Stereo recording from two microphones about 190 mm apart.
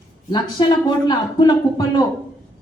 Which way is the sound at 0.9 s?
20° left (ahead or behind).